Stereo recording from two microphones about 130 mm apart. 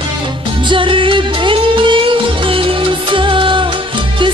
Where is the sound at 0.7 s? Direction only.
40° right (ahead or behind).